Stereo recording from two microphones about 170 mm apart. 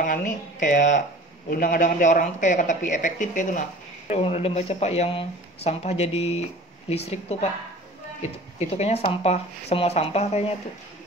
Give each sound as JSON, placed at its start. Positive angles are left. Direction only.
{"t": 0.0, "sound": "speech", "side_deg": 50}
{"t": 4.1, "sound": "speech", "side_deg": 35}
{"t": 8.5, "sound": "speech", "side_deg": 40}